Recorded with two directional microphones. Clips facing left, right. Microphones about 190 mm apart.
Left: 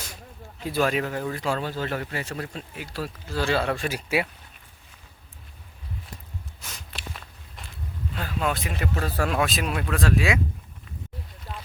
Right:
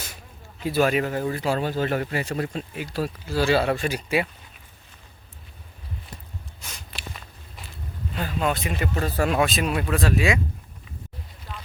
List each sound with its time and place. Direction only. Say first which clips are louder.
0.6 s speech: right 3 dB; 5° right (ahead or behind)
1.5 s speech: right 4 dB; 15° right (ahead or behind); by 4.3 s 5° left (ahead or behind)
6.6 s walk: right 1 dB; centre (ahead or behind)
8.1 s speech: right 2 dB; centre (ahead or behind)
11.5 s a sound: left 1 dB; 40° left (ahead or behind)